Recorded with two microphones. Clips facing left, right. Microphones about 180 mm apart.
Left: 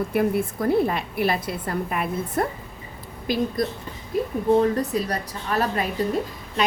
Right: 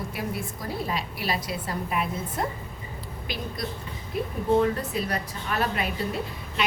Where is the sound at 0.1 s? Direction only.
55° left (ahead or behind).